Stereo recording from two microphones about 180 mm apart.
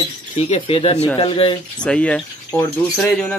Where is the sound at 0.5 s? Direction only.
35° left (ahead or behind).